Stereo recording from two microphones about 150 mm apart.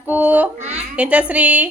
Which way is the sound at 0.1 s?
10° right (ahead or behind).